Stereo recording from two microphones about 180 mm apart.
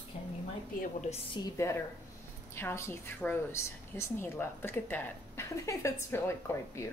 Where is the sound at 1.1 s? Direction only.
30° left (ahead or behind).